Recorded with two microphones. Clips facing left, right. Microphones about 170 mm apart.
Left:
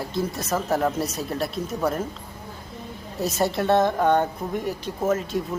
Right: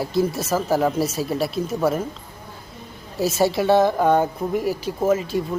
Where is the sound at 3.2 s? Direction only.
Centre (ahead or behind).